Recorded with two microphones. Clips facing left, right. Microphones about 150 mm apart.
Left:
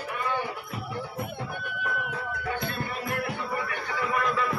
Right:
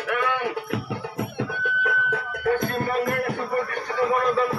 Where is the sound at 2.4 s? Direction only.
50° right (ahead or behind).